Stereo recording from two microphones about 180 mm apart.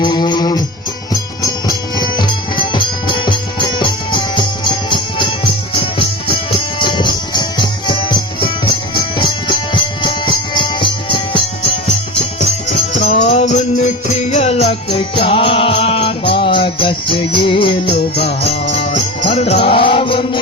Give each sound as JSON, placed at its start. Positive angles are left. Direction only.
{"t": 0.0, "sound": "music", "side_deg": 25}
{"t": 9.1, "sound": "music", "side_deg": 25}
{"t": 13.0, "sound": "music", "side_deg": 35}